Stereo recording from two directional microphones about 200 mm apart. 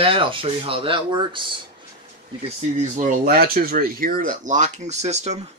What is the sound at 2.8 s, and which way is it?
Speech, 40° right (ahead or behind).